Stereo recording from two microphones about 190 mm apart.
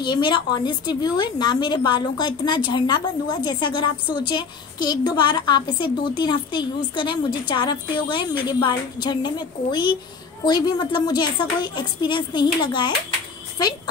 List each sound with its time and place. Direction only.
0.0 s a woman's voice: 25° left (ahead or behind)